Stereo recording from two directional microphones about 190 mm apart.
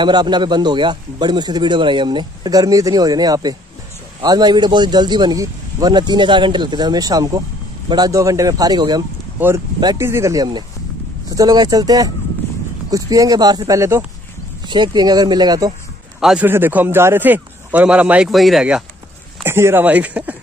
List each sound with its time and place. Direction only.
0.0 s a man's voice: 20° right (ahead or behind)
16.2 s a man's voice: 5° right (ahead or behind)